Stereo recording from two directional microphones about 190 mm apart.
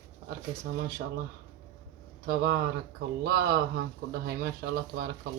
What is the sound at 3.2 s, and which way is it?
Speech, 55° right (ahead or behind).